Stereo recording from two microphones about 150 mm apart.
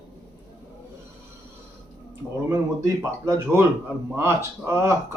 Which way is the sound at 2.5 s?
20° right (ahead or behind).